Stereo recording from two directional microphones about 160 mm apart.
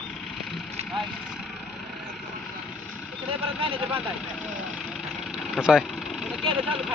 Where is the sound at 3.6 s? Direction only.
35° right (ahead or behind).